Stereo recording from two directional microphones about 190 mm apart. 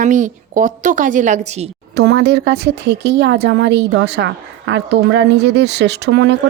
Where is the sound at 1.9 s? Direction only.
60° right (ahead or behind).